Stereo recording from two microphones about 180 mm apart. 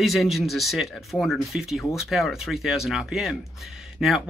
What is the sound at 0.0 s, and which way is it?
Speech, centre (ahead or behind).